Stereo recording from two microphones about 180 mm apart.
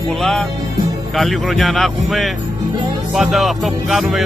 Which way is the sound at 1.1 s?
Centre (ahead or behind).